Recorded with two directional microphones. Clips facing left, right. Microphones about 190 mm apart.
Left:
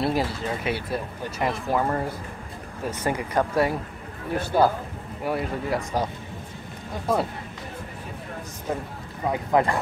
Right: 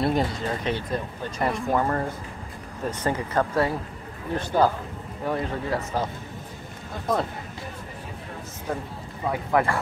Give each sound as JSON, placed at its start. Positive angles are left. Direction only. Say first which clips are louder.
{"t": 0.0, "sound": "speech", "louder": "right 1 dB", "side_deg": 5}
{"t": 9.3, "sound": "speech", "louder": "left 1 dB", "side_deg": 20}